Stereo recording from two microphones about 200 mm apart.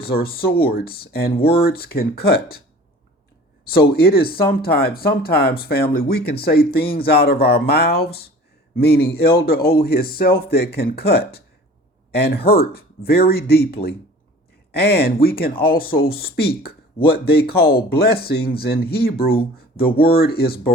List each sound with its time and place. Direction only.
0.0 s speech: 50° left (ahead or behind)
3.7 s speech: 50° left (ahead or behind)